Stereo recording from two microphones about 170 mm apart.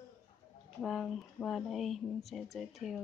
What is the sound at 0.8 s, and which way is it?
Speech, centre (ahead or behind).